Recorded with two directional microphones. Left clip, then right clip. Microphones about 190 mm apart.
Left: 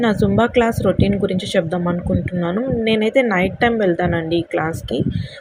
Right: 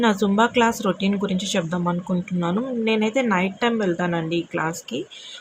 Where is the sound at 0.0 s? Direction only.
10° left (ahead or behind).